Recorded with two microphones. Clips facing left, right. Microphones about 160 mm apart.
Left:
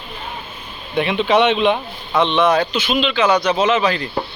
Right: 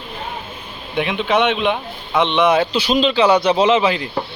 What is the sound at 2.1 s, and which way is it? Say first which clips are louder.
Speech: even; 20° right (ahead or behind).